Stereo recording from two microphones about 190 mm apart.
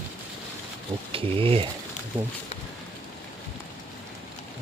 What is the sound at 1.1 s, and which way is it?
Ratchet, 30° right (ahead or behind).